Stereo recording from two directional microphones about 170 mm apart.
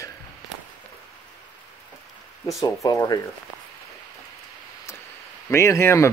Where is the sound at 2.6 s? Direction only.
20° left (ahead or behind).